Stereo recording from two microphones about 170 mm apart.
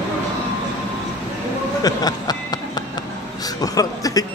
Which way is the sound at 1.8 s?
25° left (ahead or behind).